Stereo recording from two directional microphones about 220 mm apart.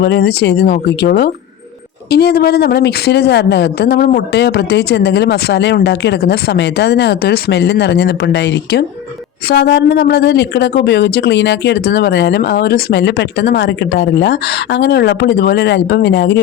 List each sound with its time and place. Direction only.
0.0 s speech: 50° left (ahead or behind)